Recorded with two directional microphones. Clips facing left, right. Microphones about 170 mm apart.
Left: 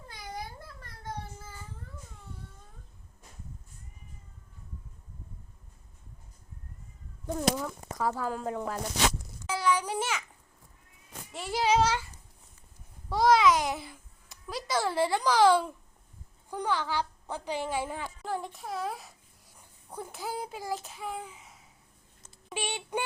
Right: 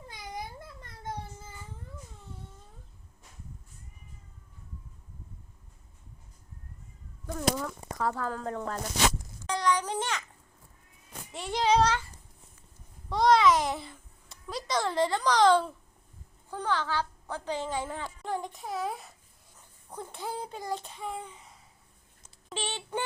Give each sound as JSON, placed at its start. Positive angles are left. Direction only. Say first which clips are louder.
{"t": 0.1, "sound": "babbling", "louder": "even", "side_deg": -20}
{"t": 7.5, "sound": "speech", "louder": "even", "side_deg": 5}
{"t": 8.2, "sound": "speech", "louder": "left 1 dB", "side_deg": 15}
{"t": 9.5, "sound": "a sound", "louder": "even", "side_deg": 5}
{"t": 11.3, "sound": "a sound", "louder": "right 1 dB", "side_deg": 0}
{"t": 13.1, "sound": "babbling", "louder": "even", "side_deg": 5}
{"t": 16.5, "sound": "a woman's voice", "louder": "even", "side_deg": 15}
{"t": 19.5, "sound": "a child's voice", "louder": "left 1 dB", "side_deg": 10}
{"t": 22.2, "sound": "a sound", "louder": "left 1 dB", "side_deg": 10}